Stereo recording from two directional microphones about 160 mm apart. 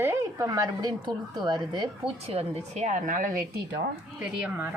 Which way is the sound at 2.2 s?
40° right (ahead or behind).